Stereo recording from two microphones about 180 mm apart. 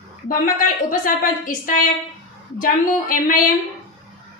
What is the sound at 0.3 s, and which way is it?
A woman's voice, 50° left (ahead or behind).